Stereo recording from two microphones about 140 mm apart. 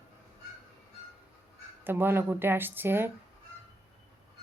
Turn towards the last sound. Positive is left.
turn(degrees=-15)  # may be behind; listen again after turning